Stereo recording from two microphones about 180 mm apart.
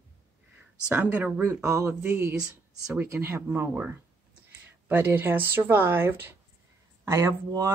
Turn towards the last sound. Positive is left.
turn(degrees=-15)  # may be behind; listen again after turning